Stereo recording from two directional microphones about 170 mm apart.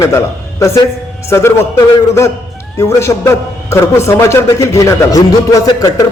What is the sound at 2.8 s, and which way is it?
A man's voice, 15° left (ahead or behind).